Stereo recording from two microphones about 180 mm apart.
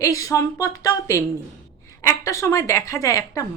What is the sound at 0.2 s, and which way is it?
Speech, 20° left (ahead or behind).